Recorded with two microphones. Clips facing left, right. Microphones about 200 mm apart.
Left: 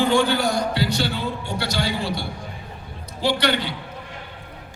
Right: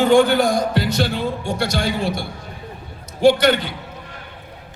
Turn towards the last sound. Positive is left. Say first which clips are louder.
# right 8 dB
turn(degrees=-50)  # may be behind; listen again after turning